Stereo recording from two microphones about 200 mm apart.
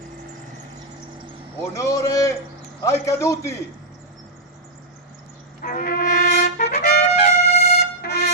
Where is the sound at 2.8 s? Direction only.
15° left (ahead or behind).